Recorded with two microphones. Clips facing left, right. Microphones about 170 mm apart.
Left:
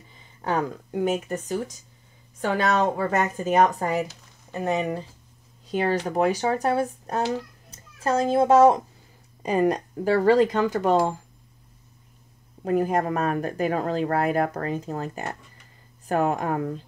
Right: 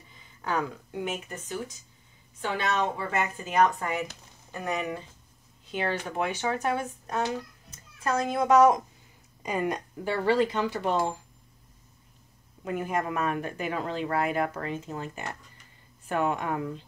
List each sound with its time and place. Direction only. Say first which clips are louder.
0.4 s speech: left 4 dB; 35° left (ahead or behind)
4.5 s a child's voice: left 6 dB; 25° left (ahead or behind); by 11.1 s 45° left (ahead or behind)
12.6 s speech: left 7 dB; 35° left (ahead or behind)